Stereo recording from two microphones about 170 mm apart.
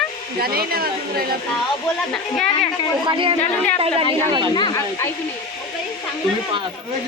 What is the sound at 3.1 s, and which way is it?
Speech, 30° right (ahead or behind).